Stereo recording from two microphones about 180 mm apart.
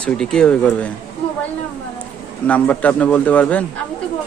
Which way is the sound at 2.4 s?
10° left (ahead or behind).